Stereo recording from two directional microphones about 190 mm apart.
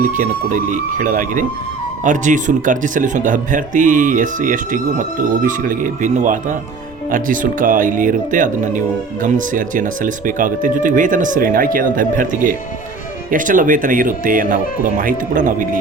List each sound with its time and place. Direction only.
0.1 s speech: 40° right (ahead or behind)